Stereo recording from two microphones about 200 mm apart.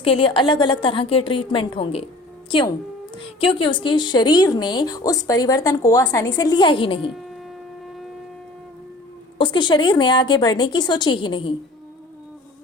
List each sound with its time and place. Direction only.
0.0 s a woman's voice: 25° left (ahead or behind)
9.4 s a woman's voice: 25° left (ahead or behind)